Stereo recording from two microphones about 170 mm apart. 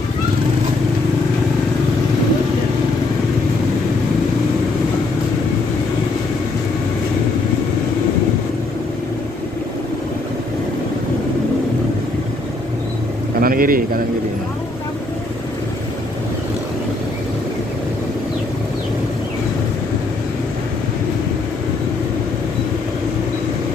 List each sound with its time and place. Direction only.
13.4 s bird: 55° right (ahead or behind)